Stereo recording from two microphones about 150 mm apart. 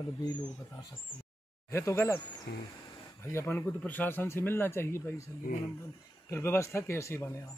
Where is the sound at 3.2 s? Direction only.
15° left (ahead or behind).